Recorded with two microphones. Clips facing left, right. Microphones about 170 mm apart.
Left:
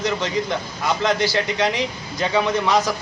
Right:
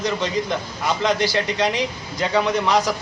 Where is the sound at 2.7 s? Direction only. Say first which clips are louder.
Even; 15° right (ahead or behind).